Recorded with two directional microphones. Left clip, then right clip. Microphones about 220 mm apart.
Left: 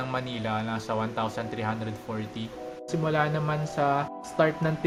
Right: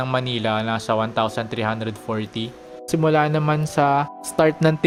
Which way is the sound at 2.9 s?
45° right (ahead or behind).